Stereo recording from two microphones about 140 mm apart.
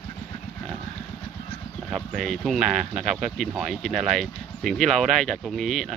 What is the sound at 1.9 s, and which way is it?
Speech, centre (ahead or behind).